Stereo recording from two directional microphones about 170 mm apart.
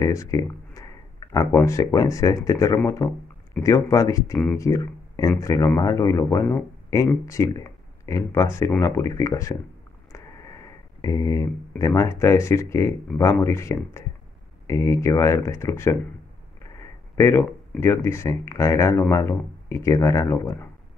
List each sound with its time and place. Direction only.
0.0 s speech: 20° left (ahead or behind)
10.1 s a sound: 20° left (ahead or behind)
11.8 s speech: 20° left (ahead or behind)